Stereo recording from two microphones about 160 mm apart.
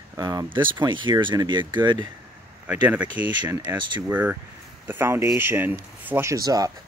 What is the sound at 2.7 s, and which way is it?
Speech, 10° right (ahead or behind).